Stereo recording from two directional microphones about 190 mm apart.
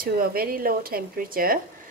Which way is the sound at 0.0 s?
50° right (ahead or behind).